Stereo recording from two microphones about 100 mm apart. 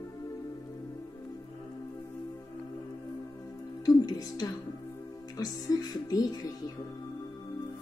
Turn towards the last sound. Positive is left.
turn(degrees=40)  # may be behind; listen again after turning